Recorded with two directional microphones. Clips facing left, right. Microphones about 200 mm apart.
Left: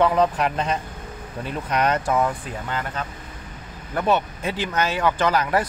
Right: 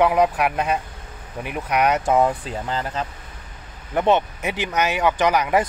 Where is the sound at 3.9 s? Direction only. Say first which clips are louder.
Right 3 dB; 20° right (ahead or behind).